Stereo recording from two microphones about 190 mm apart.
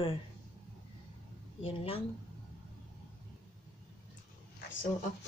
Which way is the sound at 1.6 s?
30° left (ahead or behind).